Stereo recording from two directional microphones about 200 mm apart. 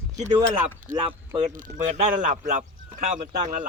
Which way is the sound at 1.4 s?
40° right (ahead or behind).